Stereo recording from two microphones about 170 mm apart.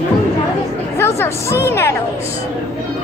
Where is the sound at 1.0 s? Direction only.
15° left (ahead or behind).